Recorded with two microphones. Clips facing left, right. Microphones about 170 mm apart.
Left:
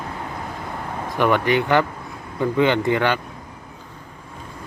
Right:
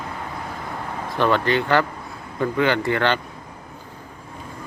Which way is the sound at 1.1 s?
15° left (ahead or behind).